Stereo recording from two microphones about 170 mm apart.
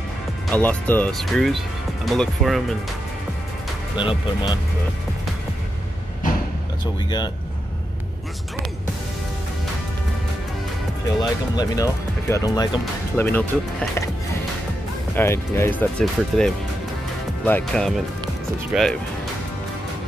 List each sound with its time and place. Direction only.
0.5 s speech: 10° left (ahead or behind)
3.9 s speech: 30° left (ahead or behind)
11.1 s speech: 20° left (ahead or behind)
13.1 s speech: 10° left (ahead or behind)
15.1 s speech: 15° left (ahead or behind)
15.8 s speech: 5° left (ahead or behind)